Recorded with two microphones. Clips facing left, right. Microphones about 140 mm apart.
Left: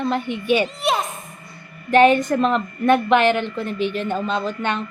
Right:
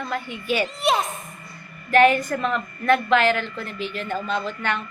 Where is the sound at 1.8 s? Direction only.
20° left (ahead or behind).